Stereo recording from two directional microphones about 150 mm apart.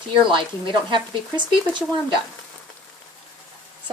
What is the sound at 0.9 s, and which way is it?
Speech, 30° right (ahead or behind).